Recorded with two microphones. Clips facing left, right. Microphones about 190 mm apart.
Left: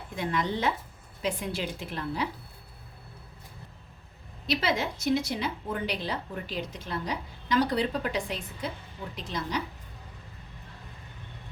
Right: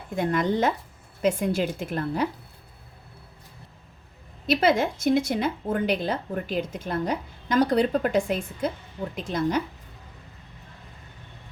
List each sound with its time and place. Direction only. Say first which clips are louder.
0.2 s speech: right 6 dB; 50° right (ahead or behind)
4.4 s speech: right 7 dB; 50° right (ahead or behind)